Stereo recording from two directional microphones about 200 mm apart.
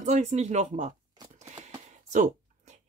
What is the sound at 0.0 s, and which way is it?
Speech, 35° right (ahead or behind).